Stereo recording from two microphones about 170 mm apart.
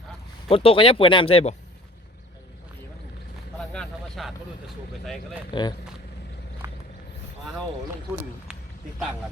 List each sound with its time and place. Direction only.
0.4 s speech: 35° left (ahead or behind)
3.6 s speech: 5° left (ahead or behind)
5.5 s speech: 25° left (ahead or behind)
6.6 s a sound: 15° right (ahead or behind)